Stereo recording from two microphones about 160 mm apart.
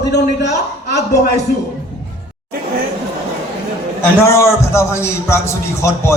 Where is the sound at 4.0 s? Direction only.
15° left (ahead or behind).